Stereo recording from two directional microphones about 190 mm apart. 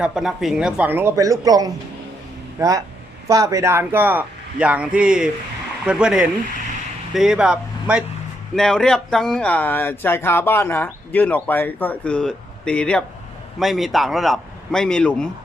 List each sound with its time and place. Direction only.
0.0 s a man's voice: 5° right (ahead or behind)